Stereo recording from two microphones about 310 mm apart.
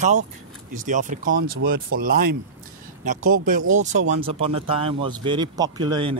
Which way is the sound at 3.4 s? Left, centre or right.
Right.